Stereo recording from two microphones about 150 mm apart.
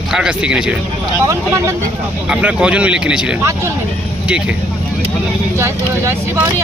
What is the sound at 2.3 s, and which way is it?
Speech, 5° right (ahead or behind).